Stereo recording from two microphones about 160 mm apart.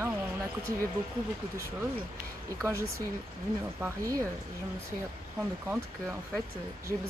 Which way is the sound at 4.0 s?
20° right (ahead or behind).